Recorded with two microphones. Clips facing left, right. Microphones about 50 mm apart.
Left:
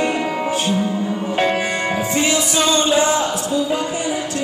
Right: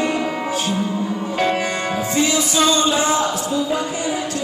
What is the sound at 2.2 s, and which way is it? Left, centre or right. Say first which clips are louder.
Music: right 2 dB; left.